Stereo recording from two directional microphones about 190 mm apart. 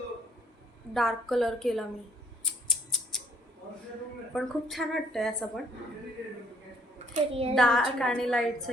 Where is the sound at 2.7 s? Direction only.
Centre (ahead or behind).